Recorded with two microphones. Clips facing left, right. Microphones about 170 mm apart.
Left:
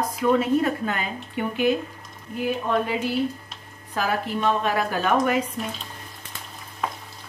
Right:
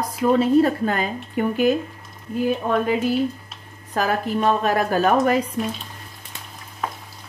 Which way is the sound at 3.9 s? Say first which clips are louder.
Right 4 dB; 45° right (ahead or behind).